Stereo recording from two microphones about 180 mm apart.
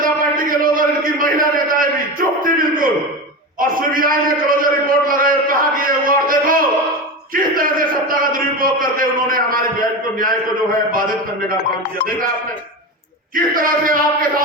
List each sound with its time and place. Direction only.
0.0 s a sound: 50° right (ahead or behind)
7.3 s a man's voice: 50° right (ahead or behind)
13.3 s a man's voice: 50° right (ahead or behind)